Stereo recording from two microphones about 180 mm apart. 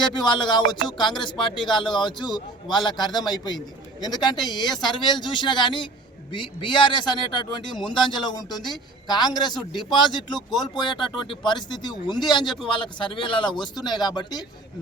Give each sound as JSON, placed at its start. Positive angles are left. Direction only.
{"t": 0.0, "sound": "speech", "side_deg": 25}